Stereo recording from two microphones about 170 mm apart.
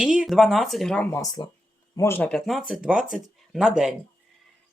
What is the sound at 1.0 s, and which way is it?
Speech, 20° left (ahead or behind).